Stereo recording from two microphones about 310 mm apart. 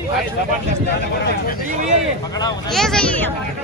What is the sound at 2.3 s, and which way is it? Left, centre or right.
Speech, centre.